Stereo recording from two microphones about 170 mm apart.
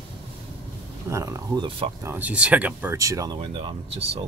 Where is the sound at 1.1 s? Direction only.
20° right (ahead or behind).